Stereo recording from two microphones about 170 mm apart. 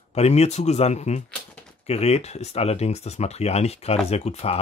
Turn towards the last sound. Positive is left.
turn(degrees=35)  # may be behind; listen again after turning